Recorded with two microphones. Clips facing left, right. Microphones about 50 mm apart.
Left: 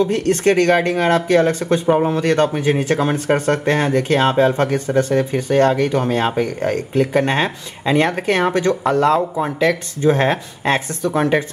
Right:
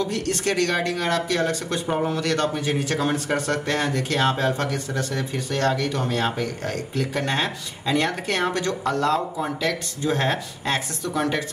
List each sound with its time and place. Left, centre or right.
0.0 s speech: left